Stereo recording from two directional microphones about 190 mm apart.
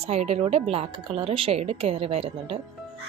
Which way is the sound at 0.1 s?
35° right (ahead or behind).